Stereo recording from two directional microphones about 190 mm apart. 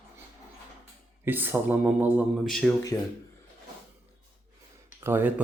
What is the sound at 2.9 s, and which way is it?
Speech, 20° left (ahead or behind).